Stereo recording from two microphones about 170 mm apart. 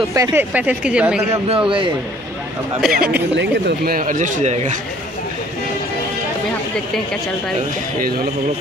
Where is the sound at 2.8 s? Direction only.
5° right (ahead or behind).